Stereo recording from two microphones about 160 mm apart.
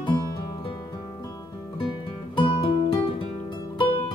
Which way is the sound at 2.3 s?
35° left (ahead or behind).